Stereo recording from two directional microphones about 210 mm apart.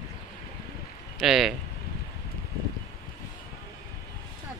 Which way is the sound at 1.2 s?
Centre (ahead or behind).